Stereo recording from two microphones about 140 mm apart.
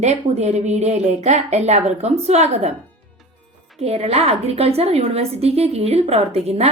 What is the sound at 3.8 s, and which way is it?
A woman's voice, 50° right (ahead or behind).